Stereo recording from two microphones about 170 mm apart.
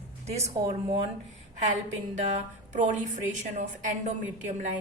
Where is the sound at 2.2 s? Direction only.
45° right (ahead or behind).